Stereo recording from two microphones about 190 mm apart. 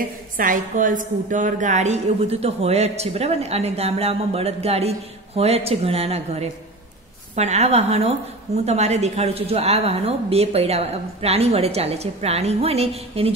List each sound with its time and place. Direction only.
0.4 s a woman's voice: 45° right (ahead or behind)